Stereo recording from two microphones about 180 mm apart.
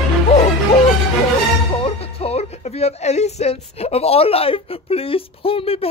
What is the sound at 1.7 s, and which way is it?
Speech, 35° left (ahead or behind).